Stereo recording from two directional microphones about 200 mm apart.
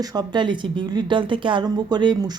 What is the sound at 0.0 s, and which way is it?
Speech, 20° right (ahead or behind).